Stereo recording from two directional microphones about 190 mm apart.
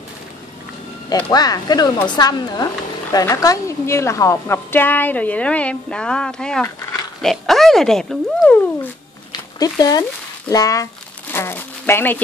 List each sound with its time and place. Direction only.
1.1 s a woman's voice: 20° left (ahead or behind); by 8.5 s centre (ahead or behind)
9.3 s a sound: 20° left (ahead or behind)
10.5 s a woman's voice: 20° left (ahead or behind)